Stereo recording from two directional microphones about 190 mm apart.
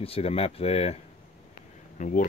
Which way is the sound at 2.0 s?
40° left (ahead or behind).